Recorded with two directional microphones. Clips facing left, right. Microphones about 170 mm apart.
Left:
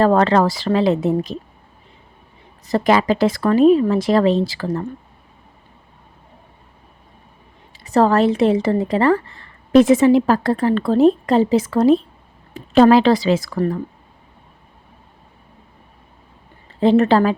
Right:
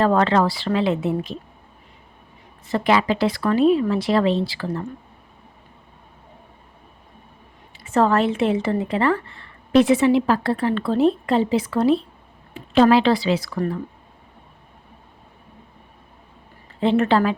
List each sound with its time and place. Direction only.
0.0 s a woman's voice: 40° left (ahead or behind)
2.6 s speech: 40° left (ahead or behind)
7.9 s a woman's voice: 35° left (ahead or behind)
16.8 s a woman's voice: 40° left (ahead or behind)